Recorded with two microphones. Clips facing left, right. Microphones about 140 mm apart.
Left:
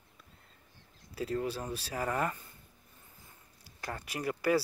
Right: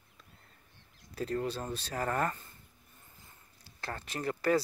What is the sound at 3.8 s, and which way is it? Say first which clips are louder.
Speech: even; 10° left (ahead or behind).